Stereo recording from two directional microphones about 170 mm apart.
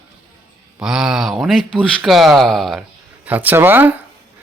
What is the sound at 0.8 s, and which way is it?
Speech, 5° right (ahead or behind).